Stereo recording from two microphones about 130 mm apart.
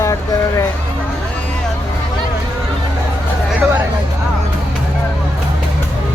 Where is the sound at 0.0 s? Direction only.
25° left (ahead or behind).